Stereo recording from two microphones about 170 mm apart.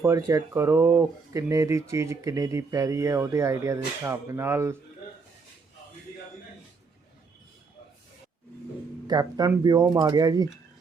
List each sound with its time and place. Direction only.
0.0 s speech: 20° right (ahead or behind)
9.0 s speech: 25° right (ahead or behind)